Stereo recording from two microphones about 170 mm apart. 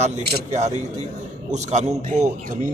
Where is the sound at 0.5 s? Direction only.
45° right (ahead or behind).